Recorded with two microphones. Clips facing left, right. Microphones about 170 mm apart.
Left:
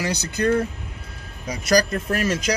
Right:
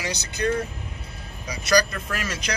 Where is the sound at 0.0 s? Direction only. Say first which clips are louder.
Left 4 dB; 55° left (ahead or behind).